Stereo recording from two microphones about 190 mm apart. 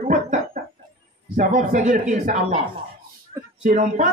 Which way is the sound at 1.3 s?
45° right (ahead or behind).